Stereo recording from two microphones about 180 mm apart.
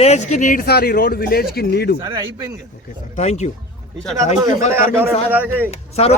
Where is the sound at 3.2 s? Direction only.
40° left (ahead or behind).